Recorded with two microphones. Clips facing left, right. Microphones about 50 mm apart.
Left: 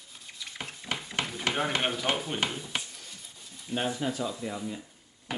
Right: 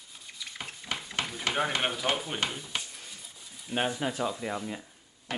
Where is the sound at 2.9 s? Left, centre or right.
Centre.